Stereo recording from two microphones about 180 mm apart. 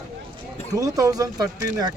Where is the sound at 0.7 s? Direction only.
20° right (ahead or behind).